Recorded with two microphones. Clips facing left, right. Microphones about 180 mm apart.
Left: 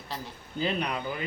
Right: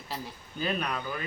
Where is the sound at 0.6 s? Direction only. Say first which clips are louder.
Left 2 dB; 25° left (ahead or behind).